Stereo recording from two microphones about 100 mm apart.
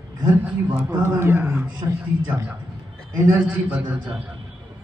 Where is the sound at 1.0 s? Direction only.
25° right (ahead or behind).